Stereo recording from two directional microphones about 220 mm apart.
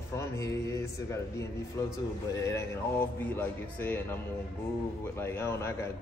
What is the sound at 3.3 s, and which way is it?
Speech, 10° left (ahead or behind).